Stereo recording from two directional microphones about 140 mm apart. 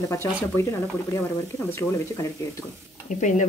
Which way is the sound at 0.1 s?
20° left (ahead or behind).